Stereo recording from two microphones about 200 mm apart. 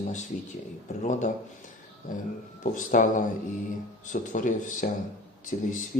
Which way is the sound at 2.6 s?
40° left (ahead or behind).